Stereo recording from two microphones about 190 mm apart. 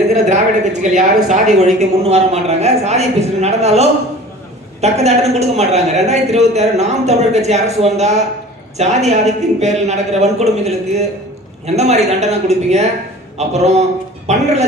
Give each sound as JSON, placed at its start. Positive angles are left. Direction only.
{"t": 0.1, "sound": "a woman's voice", "side_deg": -40}